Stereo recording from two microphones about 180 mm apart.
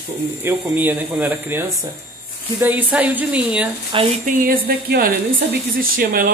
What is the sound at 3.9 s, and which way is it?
Speech, 30° right (ahead or behind).